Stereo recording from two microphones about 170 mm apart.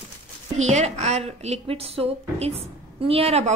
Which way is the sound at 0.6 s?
40° right (ahead or behind).